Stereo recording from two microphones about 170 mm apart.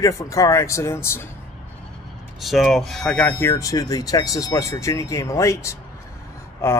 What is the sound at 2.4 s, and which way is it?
Speech, centre (ahead or behind).